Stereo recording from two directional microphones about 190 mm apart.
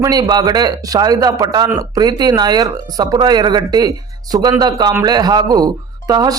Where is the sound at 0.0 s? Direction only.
20° right (ahead or behind).